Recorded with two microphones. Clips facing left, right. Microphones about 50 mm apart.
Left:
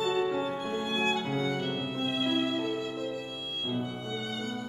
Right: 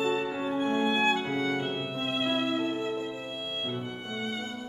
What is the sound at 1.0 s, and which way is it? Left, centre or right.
Music, right.